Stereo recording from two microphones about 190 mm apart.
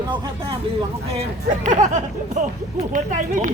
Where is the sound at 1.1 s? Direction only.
35° right (ahead or behind).